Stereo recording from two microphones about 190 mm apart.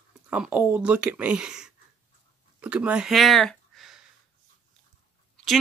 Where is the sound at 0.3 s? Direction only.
10° right (ahead or behind).